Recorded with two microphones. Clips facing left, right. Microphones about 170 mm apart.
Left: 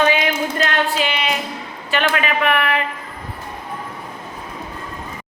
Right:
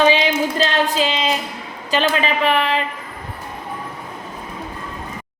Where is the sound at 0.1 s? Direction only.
25° right (ahead or behind).